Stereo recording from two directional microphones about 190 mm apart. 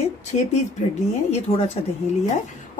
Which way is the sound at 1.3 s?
35° left (ahead or behind).